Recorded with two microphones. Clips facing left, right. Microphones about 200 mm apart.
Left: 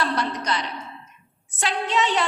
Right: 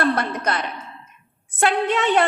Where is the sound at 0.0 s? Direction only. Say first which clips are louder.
Right 4 dB; 55° right (ahead or behind).